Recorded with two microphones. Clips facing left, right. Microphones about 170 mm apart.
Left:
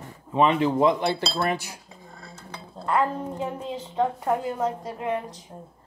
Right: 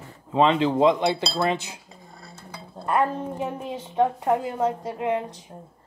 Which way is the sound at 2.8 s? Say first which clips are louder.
Right 1 dB; 20° right (ahead or behind).